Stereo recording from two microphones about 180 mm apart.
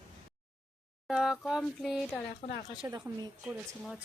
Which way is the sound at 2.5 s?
50° left (ahead or behind).